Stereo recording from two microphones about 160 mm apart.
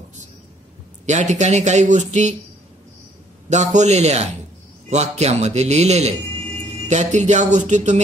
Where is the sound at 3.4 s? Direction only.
45° right (ahead or behind).